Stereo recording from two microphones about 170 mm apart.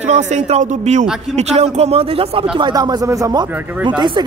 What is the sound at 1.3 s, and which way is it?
A man's voice, 40° right (ahead or behind).